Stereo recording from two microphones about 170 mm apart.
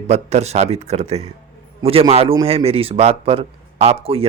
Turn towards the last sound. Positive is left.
turn(degrees=-35)  # may be behind; listen again after turning